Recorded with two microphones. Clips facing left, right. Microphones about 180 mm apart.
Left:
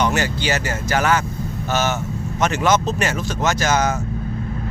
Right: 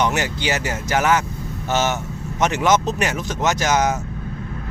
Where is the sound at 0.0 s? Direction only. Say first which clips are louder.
Left 1 dB; 20° right (ahead or behind).